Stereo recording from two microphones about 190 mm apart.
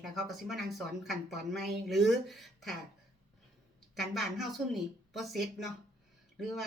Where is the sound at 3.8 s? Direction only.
Centre (ahead or behind).